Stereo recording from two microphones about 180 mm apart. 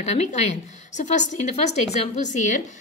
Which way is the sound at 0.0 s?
40° left (ahead or behind).